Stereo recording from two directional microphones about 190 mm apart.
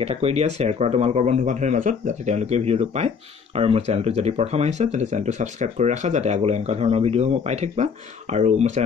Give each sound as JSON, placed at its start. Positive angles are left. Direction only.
{"t": 0.0, "sound": "speech", "side_deg": -30}